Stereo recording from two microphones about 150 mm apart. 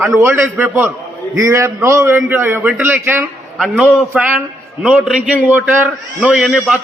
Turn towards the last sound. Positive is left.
turn(degrees=0)  # may be behind; listen again after turning